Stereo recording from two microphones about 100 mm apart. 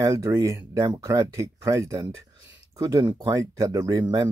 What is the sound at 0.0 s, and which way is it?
Speech, 40° right (ahead or behind).